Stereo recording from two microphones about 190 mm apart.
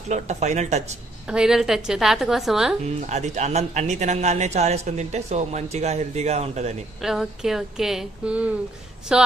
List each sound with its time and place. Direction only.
0.1 s speech: 35° right (ahead or behind)
1.3 s speech: 5° right (ahead or behind)
2.8 s speech: 35° right (ahead or behind)
7.0 s speech: centre (ahead or behind)